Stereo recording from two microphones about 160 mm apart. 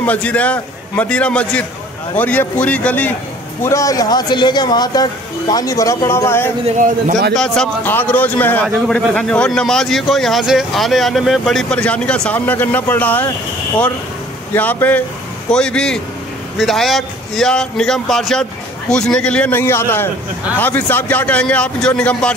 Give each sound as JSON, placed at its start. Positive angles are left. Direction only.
{"t": 0.0, "sound": "a man's voice", "side_deg": 10}
{"t": 7.3, "sound": "a man's voice", "side_deg": 5}
{"t": 14.5, "sound": "a man's voice", "side_deg": 10}